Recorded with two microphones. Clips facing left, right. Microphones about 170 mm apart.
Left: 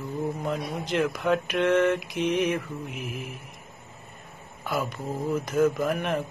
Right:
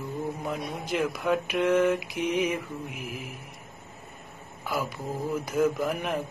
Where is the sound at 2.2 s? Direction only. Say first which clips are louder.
Left 4 dB; 70° left (ahead or behind).